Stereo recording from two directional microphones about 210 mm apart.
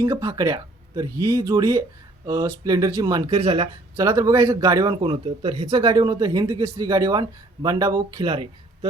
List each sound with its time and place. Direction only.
0.0 s speech: 15° right (ahead or behind)